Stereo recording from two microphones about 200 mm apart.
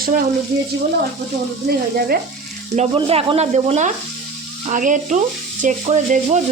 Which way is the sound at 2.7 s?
30° right (ahead or behind).